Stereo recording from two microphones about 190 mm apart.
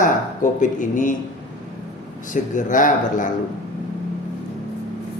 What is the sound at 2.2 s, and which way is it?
Speech, 40° left (ahead or behind).